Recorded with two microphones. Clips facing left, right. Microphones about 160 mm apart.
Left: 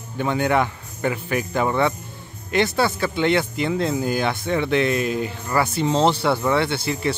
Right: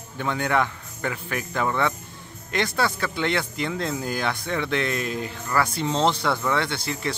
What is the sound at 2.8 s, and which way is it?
Speech, 25° left (ahead or behind).